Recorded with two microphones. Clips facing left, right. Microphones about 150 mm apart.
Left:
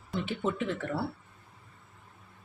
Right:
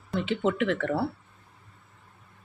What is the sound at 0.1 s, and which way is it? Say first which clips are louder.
Speech: right 5 dB; 90° right.